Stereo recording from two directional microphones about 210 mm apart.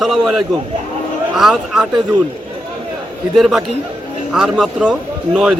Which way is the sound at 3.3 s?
Centre (ahead or behind).